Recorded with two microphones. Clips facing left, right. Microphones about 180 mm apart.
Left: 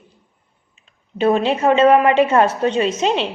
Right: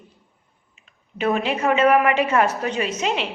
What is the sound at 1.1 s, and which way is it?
A woman's voice, 30° left (ahead or behind).